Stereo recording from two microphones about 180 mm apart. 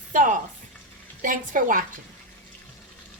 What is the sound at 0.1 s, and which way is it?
A woman's voice, 45° right (ahead or behind).